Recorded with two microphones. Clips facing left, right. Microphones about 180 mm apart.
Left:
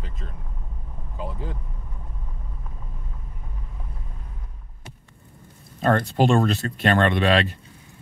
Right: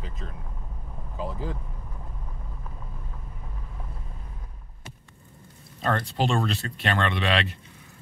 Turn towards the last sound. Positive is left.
turn(degrees=40)  # may be behind; listen again after turning